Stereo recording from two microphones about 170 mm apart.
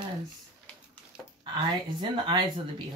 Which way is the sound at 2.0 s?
25° right (ahead or behind).